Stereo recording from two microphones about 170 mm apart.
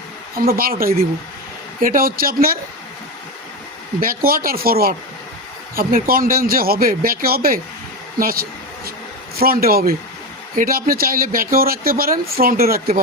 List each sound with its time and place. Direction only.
0.3 s speech: 60° right (ahead or behind)
4.0 s speech: 60° right (ahead or behind)